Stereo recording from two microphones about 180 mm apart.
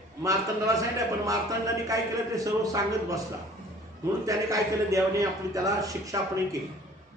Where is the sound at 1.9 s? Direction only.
20° right (ahead or behind).